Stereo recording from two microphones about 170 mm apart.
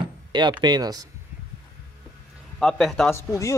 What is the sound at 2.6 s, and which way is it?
Speech, centre (ahead or behind).